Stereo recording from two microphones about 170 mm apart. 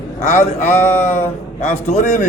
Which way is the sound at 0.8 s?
10° left (ahead or behind).